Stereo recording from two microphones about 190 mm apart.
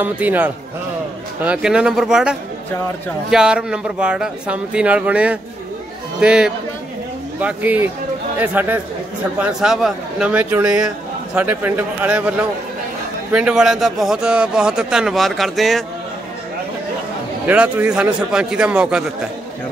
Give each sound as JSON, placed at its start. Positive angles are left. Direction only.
{"t": 0.0, "sound": "a man's voice", "side_deg": -10}
{"t": 17.5, "sound": "a man's voice", "side_deg": -5}